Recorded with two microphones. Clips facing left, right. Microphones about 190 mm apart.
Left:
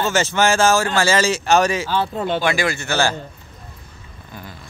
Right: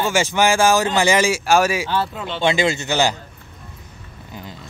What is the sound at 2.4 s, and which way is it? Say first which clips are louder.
Speech: right 2 dB; 25° right (ahead or behind).